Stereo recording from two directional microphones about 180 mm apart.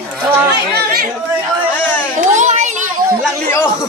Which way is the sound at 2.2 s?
40° right (ahead or behind).